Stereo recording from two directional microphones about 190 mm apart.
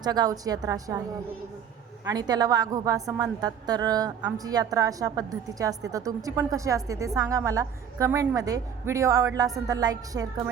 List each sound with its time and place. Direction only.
0.0 s a woman's voice: 20° right (ahead or behind)
2.0 s a woman's voice: 20° right (ahead or behind)